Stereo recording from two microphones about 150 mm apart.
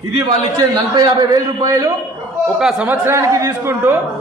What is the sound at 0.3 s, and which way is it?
A man's voice, 25° right (ahead or behind).